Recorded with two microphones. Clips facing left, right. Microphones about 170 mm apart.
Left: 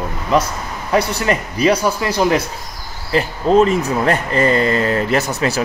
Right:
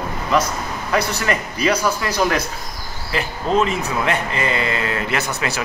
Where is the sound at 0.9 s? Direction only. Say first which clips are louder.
Left 4 dB; 30° left (ahead or behind).